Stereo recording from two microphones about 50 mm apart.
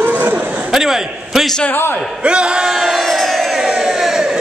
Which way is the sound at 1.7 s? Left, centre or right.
Left.